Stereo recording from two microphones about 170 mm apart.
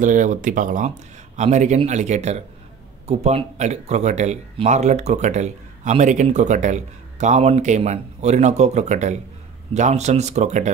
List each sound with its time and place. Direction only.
0.0 s speech: 50° right (ahead or behind)